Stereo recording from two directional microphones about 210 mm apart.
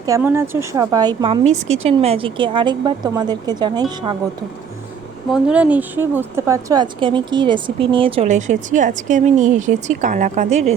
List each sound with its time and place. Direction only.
0.0 s a woman's voice: 10° right (ahead or behind)
5.3 s a woman's voice: 5° right (ahead or behind); by 10.8 s 30° right (ahead or behind)